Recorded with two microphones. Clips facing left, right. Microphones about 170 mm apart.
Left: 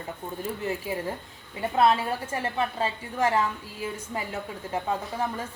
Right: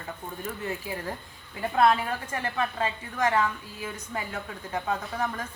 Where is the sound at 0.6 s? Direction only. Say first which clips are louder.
Left 3 dB; 25° left (ahead or behind).